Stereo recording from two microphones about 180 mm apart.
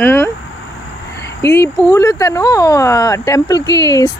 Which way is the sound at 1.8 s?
15° left (ahead or behind).